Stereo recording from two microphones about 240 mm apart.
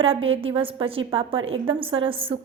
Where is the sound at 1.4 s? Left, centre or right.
Right.